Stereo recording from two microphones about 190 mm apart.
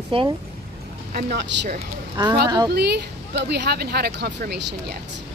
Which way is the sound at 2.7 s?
60° right (ahead or behind).